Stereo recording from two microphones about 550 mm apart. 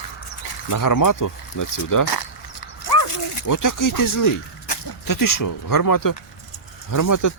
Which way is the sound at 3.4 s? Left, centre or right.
Left.